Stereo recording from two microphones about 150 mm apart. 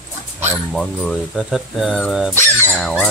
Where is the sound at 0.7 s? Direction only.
Centre (ahead or behind).